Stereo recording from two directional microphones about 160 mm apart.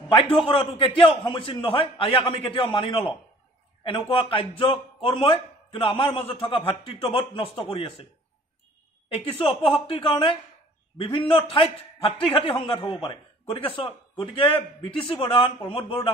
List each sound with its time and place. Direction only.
0.1 s a man's voice: 35° left (ahead or behind)
9.1 s a man's voice: 35° left (ahead or behind)